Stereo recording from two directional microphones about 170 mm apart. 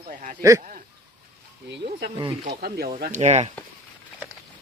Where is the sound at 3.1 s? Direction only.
40° right (ahead or behind).